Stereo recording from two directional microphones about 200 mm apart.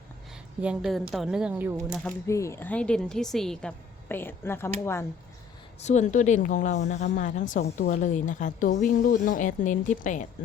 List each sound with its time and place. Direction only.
0.6 s speech: 5° right (ahead or behind)
2.0 s speech: 15° left (ahead or behind)
5.8 s a woman's voice: 35° left (ahead or behind)